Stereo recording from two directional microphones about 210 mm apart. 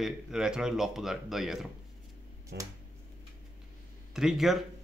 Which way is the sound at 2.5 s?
55° right (ahead or behind).